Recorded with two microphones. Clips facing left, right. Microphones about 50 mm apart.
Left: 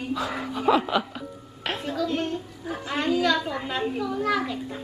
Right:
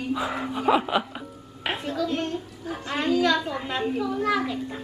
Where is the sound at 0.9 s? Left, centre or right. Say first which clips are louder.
Even; centre.